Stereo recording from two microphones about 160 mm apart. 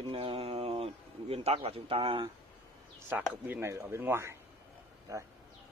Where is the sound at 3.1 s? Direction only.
10° right (ahead or behind).